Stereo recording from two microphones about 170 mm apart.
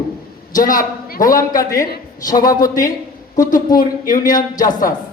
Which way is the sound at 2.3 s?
20° left (ahead or behind).